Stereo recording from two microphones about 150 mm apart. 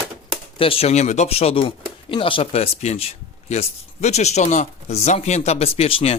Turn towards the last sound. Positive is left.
turn(degrees=40)  # may be behind; listen again after turning